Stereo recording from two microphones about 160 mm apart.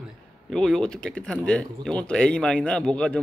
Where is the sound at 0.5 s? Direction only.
5° left (ahead or behind).